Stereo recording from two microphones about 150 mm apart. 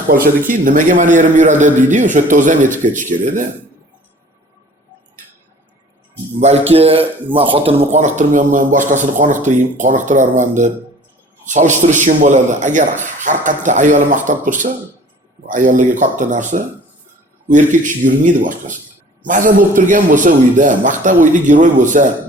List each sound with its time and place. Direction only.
0.1 s a man's voice: 70° right (ahead or behind)
6.4 s a man's voice: 45° right (ahead or behind)